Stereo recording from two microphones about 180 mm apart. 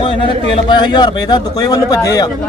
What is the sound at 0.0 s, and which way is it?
A man's voice, 30° left (ahead or behind).